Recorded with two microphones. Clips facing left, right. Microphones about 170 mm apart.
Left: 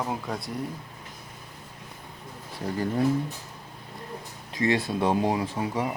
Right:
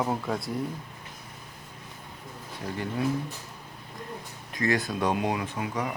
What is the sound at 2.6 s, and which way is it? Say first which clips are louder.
Speech: left 5 dB; 35° left (ahead or behind).